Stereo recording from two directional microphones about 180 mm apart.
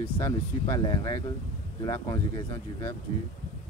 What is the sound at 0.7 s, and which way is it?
Speech, 25° left (ahead or behind).